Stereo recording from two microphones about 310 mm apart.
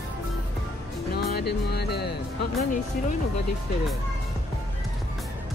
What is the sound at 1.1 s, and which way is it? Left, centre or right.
Speech, left.